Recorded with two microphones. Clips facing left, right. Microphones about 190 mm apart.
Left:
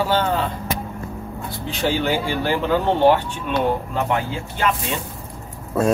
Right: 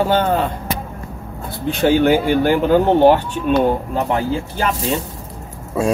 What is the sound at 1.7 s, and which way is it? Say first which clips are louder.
Speech: right 8 dB; 55° right (ahead or behind).